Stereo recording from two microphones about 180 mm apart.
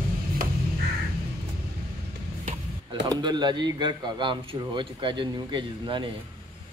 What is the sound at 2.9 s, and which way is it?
A man's voice, 25° right (ahead or behind).